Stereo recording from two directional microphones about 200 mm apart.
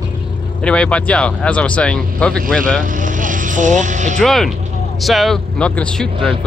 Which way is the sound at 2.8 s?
40° right (ahead or behind).